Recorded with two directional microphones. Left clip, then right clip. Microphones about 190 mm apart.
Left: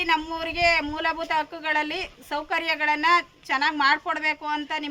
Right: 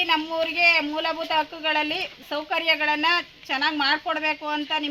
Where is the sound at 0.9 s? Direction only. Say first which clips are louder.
Even; 15° left (ahead or behind).